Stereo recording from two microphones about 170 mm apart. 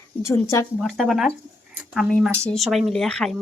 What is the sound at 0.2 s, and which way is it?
Speech, 15° left (ahead or behind).